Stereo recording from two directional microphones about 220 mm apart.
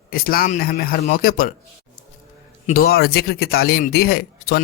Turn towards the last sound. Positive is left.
turn(degrees=45)  # may be behind; listen again after turning